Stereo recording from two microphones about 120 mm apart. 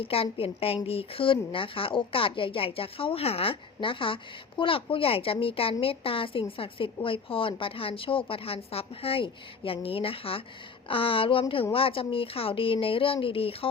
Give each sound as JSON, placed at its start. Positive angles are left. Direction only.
{"t": 0.0, "sound": "speech", "side_deg": 50}